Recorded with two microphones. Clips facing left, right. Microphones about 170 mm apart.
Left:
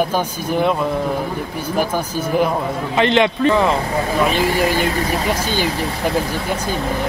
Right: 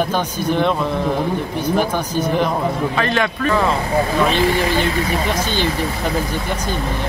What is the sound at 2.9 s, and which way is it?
Speech, 20° left (ahead or behind).